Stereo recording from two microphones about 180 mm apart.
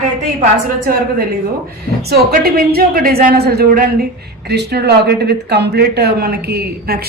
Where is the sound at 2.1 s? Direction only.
55° right (ahead or behind).